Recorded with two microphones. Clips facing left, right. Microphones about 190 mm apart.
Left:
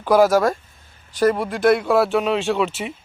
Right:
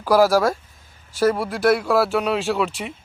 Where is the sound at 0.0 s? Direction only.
Centre (ahead or behind).